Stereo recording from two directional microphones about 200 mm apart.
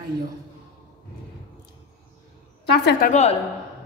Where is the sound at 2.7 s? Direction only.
55° left (ahead or behind).